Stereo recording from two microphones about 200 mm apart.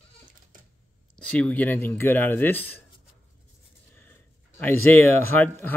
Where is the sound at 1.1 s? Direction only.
5° left (ahead or behind).